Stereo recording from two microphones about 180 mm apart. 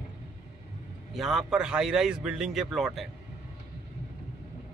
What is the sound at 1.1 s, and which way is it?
Speech, centre (ahead or behind).